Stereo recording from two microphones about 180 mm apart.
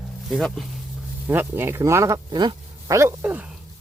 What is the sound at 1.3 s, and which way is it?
Speech, 10° right (ahead or behind).